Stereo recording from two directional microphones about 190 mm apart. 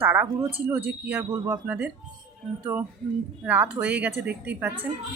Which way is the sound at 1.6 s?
10° right (ahead or behind).